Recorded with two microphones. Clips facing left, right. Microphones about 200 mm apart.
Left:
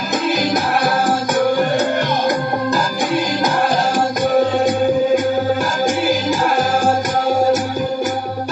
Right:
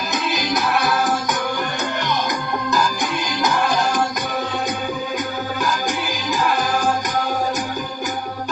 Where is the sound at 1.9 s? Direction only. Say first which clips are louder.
Left 6 dB; 55° left (ahead or behind).